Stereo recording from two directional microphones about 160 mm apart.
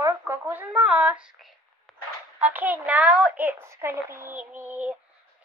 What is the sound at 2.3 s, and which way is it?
A child's voice, 10° right (ahead or behind).